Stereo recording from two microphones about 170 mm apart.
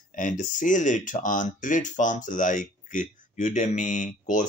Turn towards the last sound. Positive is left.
turn(degrees=45)  # may be behind; listen again after turning